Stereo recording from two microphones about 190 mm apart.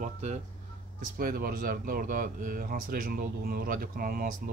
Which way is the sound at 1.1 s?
50° right (ahead or behind).